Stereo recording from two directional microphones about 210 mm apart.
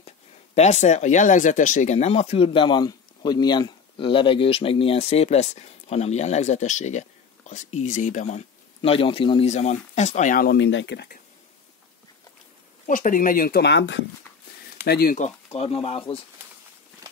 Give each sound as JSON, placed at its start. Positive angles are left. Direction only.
{"t": 0.6, "sound": "speech", "side_deg": 35}
{"t": 12.8, "sound": "speech", "side_deg": 40}
{"t": 14.9, "sound": "speech", "side_deg": 45}